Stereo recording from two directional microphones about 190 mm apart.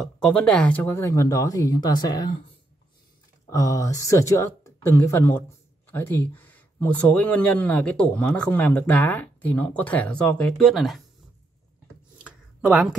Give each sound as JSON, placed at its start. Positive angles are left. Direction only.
{"t": 0.0, "sound": "speech", "side_deg": 5}
{"t": 3.4, "sound": "speech", "side_deg": 15}
{"t": 12.2, "sound": "a sound", "side_deg": -5}